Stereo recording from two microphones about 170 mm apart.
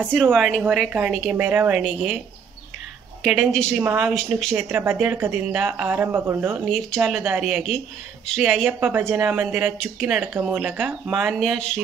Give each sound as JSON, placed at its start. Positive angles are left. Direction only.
{"t": 0.0, "sound": "a woman's voice", "side_deg": -5}
{"t": 3.3, "sound": "a woman's voice", "side_deg": 0}
{"t": 4.6, "sound": "a woman's voice", "side_deg": -15}
{"t": 8.7, "sound": "a woman's voice", "side_deg": -10}